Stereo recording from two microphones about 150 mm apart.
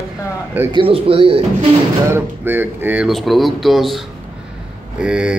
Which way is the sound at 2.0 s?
15° right (ahead or behind).